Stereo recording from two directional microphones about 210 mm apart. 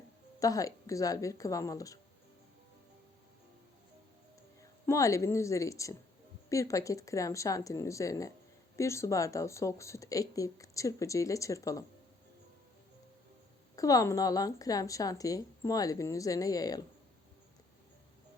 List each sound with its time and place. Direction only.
0.3 s speech: 15° left (ahead or behind)
4.9 s speech: 15° left (ahead or behind)
13.7 s speech: 15° left (ahead or behind)